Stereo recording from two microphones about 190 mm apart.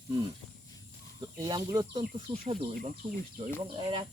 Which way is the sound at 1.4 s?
20° right (ahead or behind).